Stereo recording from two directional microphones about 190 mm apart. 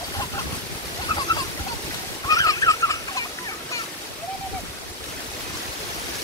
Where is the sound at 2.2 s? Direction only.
20° left (ahead or behind).